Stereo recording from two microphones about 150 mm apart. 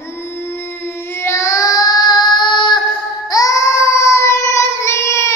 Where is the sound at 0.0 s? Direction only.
15° left (ahead or behind).